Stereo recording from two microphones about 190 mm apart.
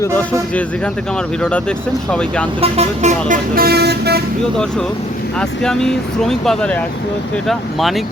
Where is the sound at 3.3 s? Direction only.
50° right (ahead or behind).